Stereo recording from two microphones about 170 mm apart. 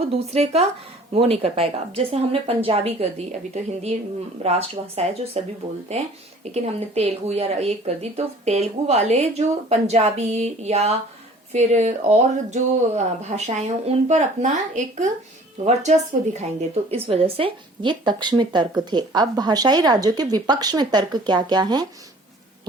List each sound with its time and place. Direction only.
0.3 s speech: 40° right (ahead or behind)
6.4 s speech: 40° right (ahead or behind)